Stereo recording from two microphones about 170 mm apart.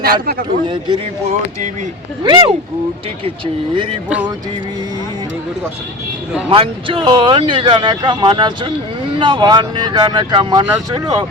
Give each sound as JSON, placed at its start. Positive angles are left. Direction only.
{"t": 0.0, "sound": "a man's voice", "side_deg": -60}
{"t": 2.2, "sound": "speech", "side_deg": -25}
{"t": 6.5, "sound": "speech", "side_deg": -30}